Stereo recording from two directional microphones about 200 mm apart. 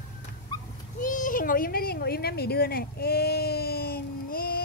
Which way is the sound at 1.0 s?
40° left (ahead or behind).